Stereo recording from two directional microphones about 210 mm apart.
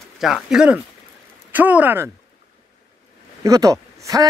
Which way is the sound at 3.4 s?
15° right (ahead or behind).